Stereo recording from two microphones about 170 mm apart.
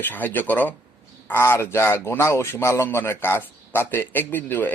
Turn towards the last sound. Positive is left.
turn(degrees=10)  # may be behind; listen again after turning